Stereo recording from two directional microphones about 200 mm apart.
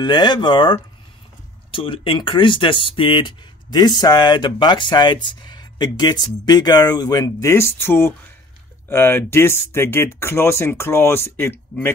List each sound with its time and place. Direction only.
0.0 s speech: 20° left (ahead or behind)